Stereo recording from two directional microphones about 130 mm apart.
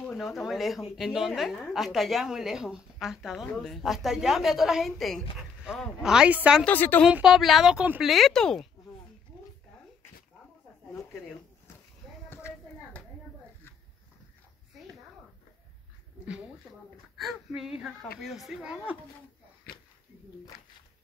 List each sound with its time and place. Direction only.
0.2 s a woman's voice: centre (ahead or behind)
6.6 s a woman's voice: 15° left (ahead or behind)
7.1 s a woman's voice: 5° right (ahead or behind)
8.1 s a woman's voice: centre (ahead or behind)
12.3 s a sound: 20° left (ahead or behind)
17.2 s a woman's voice: centre (ahead or behind)